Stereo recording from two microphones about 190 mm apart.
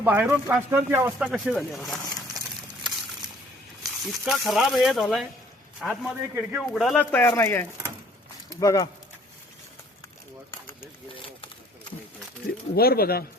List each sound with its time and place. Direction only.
0.0 s speech: 10° right (ahead or behind)
3.8 s speech: centre (ahead or behind); by 8.9 s 20° left (ahead or behind)
12.7 s speech: 55° left (ahead or behind)